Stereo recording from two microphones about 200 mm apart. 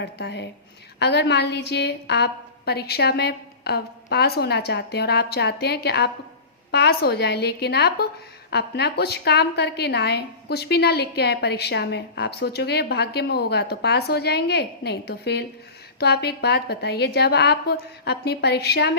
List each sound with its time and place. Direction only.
0.0 s a woman's voice: 55° left (ahead or behind)